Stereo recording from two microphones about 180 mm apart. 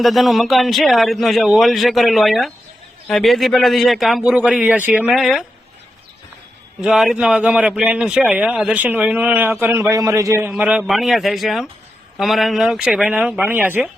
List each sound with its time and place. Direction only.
0.0 s a man's voice: centre (ahead or behind)
6.8 s a man's voice: 5° right (ahead or behind)